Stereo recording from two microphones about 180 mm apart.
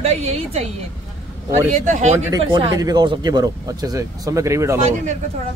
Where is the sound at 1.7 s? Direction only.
45° right (ahead or behind).